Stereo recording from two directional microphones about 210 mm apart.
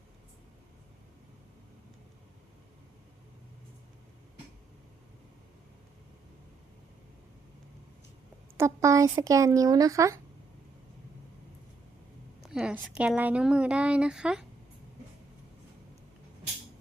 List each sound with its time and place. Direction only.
8.5 s speech: 15° right (ahead or behind)
12.4 s a woman's voice: 5° right (ahead or behind)